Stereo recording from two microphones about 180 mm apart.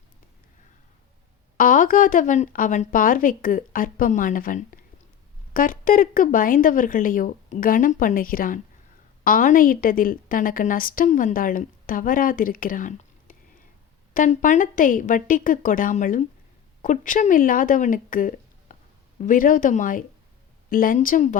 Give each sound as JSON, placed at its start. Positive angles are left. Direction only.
{"t": 1.5, "sound": "a woman's voice", "side_deg": 50}